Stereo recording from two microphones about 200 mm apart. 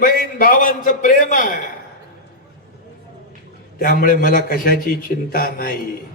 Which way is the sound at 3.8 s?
45° left (ahead or behind).